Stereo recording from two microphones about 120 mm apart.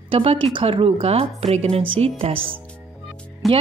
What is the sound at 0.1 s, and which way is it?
A woman's voice, 50° right (ahead or behind).